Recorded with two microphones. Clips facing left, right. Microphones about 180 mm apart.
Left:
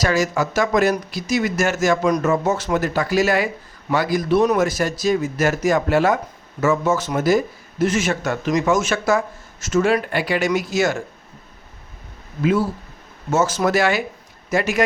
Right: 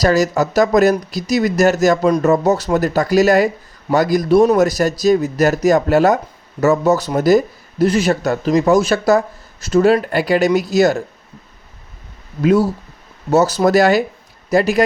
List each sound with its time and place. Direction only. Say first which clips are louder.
0.0 s a man's voice: right 5 dB; 40° right (ahead or behind)
12.4 s a man's voice: right 5 dB; 40° right (ahead or behind)